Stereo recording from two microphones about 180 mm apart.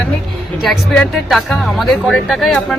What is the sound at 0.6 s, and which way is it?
Speech, centre (ahead or behind).